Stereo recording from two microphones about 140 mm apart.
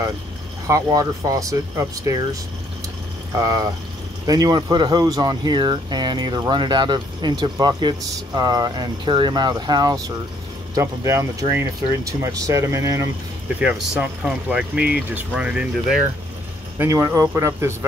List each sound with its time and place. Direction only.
0.7 s speech: 25° right (ahead or behind)
3.3 s speech: 25° right (ahead or behind)
13.6 s speech: 10° right (ahead or behind)